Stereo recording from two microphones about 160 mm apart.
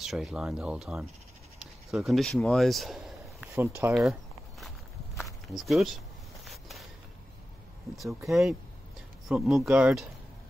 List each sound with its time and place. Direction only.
0.0 s speech: centre (ahead or behind)
1.6 s a sound: centre (ahead or behind)
3.6 s speech: 15° right (ahead or behind)
3.9 s walk: centre (ahead or behind)
6.4 s a sound: centre (ahead or behind)
7.9 s speech: centre (ahead or behind)